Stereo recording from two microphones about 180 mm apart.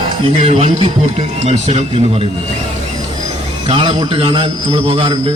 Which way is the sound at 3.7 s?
30° right (ahead or behind).